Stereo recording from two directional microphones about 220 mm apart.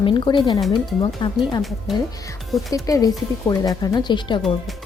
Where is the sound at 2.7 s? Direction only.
15° left (ahead or behind).